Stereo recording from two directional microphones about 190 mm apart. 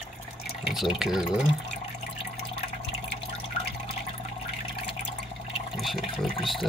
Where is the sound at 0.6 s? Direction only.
Centre (ahead or behind).